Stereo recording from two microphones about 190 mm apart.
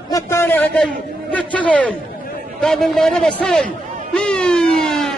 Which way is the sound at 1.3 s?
5° left (ahead or behind).